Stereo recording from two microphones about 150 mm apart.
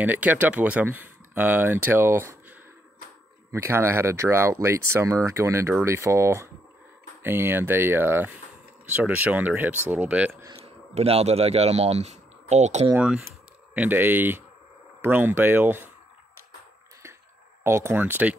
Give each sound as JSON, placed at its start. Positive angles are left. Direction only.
{"t": 0.0, "sound": "speech", "side_deg": -10}
{"t": 10.6, "sound": "speech", "side_deg": -40}
{"t": 12.9, "sound": "speech", "side_deg": -5}
{"t": 17.6, "sound": "speech", "side_deg": -15}